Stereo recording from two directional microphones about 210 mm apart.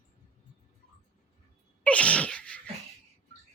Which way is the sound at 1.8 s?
5° left (ahead or behind).